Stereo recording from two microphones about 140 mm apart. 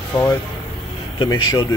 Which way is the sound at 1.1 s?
35° left (ahead or behind).